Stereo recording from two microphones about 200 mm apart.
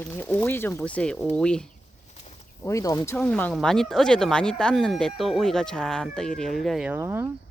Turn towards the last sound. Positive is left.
turn(degrees=-10)  # may be behind; listen again after turning